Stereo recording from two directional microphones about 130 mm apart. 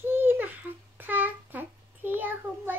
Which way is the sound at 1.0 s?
15° right (ahead or behind).